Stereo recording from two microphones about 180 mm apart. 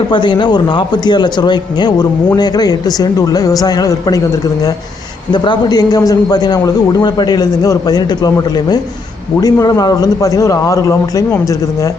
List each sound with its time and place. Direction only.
0.1 s a man's voice: 25° left (ahead or behind)
5.3 s a man's voice: 25° left (ahead or behind)